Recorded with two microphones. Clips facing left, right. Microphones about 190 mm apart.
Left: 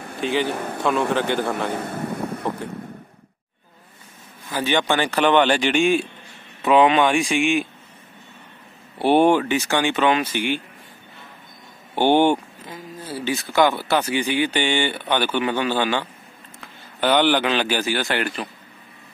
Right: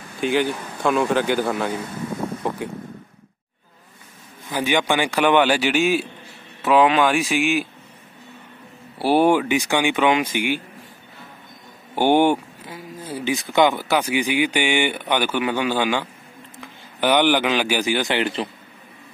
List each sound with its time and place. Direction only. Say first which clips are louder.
0.2 s a man's voice: right 2 dB; centre (ahead or behind)
0.5 s a man's voice: left 2 dB; 60° left (ahead or behind)
0.8 s speech: right 2 dB; centre (ahead or behind)
1.7 s a sound: left 1 dB; 60° left (ahead or behind)
4.5 s speech: even; 10° right (ahead or behind)
8.9 s speech: left 1 dB; 5° right (ahead or behind)
11.9 s a man's voice: even; 10° right (ahead or behind)